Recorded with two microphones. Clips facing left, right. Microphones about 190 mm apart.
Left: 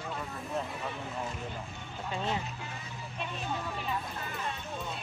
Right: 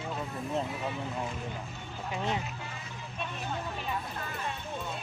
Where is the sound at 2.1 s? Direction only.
15° right (ahead or behind).